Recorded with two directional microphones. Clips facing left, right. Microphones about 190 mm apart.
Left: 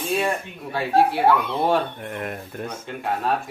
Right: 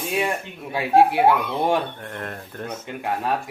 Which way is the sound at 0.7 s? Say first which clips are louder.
Right 2 dB; 15° right (ahead or behind).